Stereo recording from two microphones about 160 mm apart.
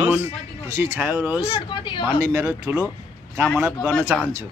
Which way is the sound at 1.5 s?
30° left (ahead or behind).